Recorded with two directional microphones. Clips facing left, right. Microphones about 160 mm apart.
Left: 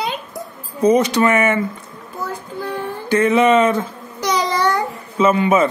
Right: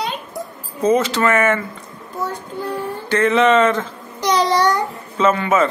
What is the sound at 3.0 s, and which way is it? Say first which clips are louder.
Speech: left 1 dB; 10° left (ahead or behind).